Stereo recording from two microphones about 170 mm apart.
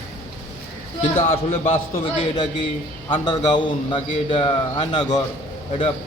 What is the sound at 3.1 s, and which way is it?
A man's voice, 25° left (ahead or behind).